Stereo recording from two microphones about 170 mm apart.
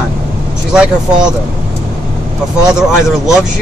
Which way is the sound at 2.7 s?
5° right (ahead or behind).